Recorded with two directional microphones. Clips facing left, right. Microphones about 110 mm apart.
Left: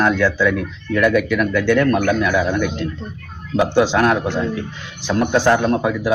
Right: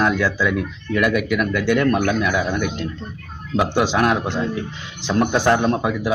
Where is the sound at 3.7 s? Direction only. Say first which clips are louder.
Left 3 dB; 15° right (ahead or behind).